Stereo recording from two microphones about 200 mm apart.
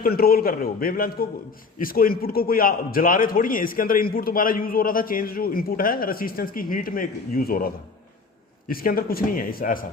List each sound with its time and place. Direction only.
0.0 s a man's voice: 50° left (ahead or behind)